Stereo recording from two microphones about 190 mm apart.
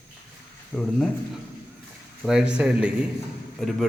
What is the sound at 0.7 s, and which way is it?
Speech, centre (ahead or behind).